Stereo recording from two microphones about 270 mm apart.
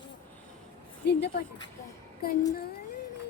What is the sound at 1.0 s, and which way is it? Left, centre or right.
Speech, left.